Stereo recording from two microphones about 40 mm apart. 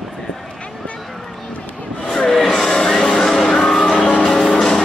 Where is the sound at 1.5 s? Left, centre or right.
Left.